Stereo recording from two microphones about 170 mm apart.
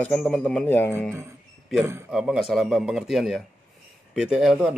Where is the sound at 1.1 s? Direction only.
15° right (ahead or behind).